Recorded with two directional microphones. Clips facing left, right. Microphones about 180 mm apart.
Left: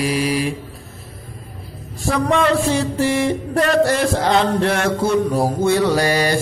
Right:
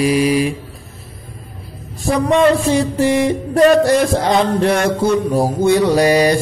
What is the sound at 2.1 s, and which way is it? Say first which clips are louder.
Mantra: right 4 dB; 15° right (ahead or behind).